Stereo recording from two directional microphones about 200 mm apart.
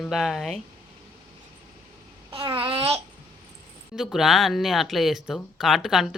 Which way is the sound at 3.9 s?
Centre (ahead or behind).